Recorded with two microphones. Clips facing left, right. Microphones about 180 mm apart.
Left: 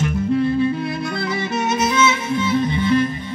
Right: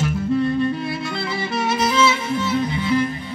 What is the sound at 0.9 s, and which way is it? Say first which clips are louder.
Music: left 2 dB; 5° right (ahead or behind).